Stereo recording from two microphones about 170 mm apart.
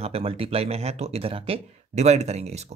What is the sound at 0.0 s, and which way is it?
Speech, 35° right (ahead or behind).